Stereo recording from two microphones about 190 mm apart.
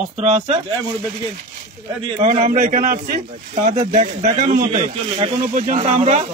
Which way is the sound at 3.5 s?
35° right (ahead or behind).